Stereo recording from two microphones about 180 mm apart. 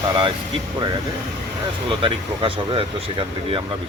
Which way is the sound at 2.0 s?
30° right (ahead or behind).